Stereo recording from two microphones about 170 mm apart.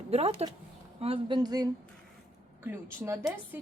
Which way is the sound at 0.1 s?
40° right (ahead or behind).